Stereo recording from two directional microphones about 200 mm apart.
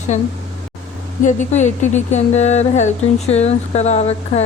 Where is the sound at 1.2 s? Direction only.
35° left (ahead or behind).